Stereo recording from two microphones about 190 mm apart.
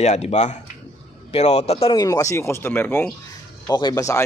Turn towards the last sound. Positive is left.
turn(degrees=15)  # may be behind; listen again after turning